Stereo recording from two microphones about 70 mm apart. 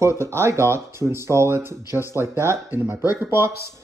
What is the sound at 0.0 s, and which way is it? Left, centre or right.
Speech, right.